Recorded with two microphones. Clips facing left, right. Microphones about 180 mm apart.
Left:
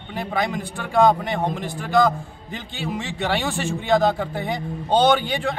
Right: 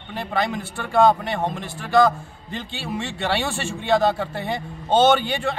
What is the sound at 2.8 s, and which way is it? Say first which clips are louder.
A man's voice: left 2 dB; 15° left (ahead or behind).